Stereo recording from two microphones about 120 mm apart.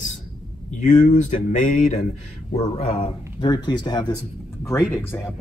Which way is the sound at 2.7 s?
55° left (ahead or behind).